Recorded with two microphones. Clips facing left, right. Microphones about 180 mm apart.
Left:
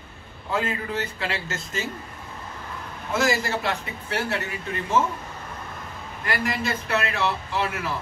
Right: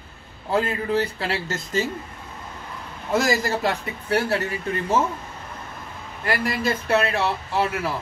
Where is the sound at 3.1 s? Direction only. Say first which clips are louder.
Right 2 dB; 35° right (ahead or behind).